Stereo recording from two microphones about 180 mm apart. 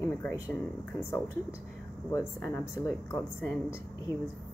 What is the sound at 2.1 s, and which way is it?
Speech, 15° left (ahead or behind).